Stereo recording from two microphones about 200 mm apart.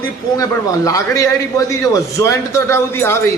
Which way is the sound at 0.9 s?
15° left (ahead or behind).